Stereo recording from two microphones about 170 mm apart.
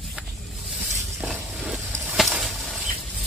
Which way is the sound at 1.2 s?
Centre (ahead or behind).